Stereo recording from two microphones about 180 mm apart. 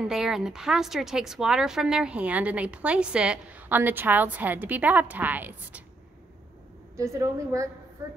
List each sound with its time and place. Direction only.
0.0 s a woman's voice: centre (ahead or behind)
7.0 s a woman's voice: 15° right (ahead or behind)